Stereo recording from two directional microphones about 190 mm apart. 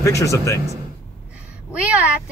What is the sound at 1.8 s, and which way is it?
Speech, 5° right (ahead or behind).